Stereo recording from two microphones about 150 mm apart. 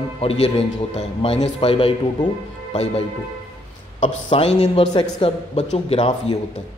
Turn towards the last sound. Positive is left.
turn(degrees=40)  # may be behind; listen again after turning